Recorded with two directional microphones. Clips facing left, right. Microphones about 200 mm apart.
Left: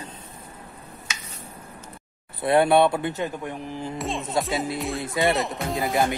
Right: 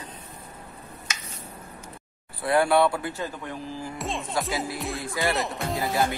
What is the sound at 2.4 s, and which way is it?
Speech, 25° left (ahead or behind).